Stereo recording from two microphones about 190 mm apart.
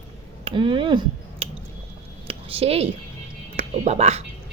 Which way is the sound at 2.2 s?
30° right (ahead or behind).